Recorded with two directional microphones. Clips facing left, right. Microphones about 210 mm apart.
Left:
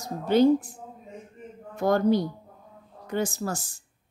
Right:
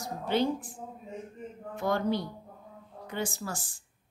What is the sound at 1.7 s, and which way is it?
Speech, 40° left (ahead or behind).